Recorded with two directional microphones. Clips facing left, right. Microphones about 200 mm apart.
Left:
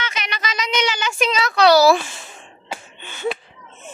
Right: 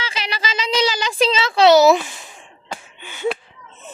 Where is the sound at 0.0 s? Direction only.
30° right (ahead or behind); by 3.2 s 10° right (ahead or behind).